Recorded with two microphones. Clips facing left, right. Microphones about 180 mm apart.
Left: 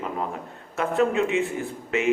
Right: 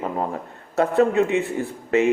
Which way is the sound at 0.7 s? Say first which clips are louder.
Right 4 dB; 35° right (ahead or behind).